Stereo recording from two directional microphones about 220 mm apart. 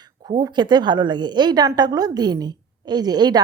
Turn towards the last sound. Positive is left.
turn(degrees=-20)  # may be behind; listen again after turning